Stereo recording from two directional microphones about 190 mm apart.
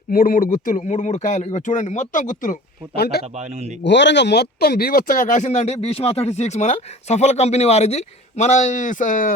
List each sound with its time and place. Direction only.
0.1 s speech: 50° left (ahead or behind)
3.2 s a man's voice: 35° right (ahead or behind)
3.8 s speech: 70° left (ahead or behind); by 9.3 s 40° left (ahead or behind)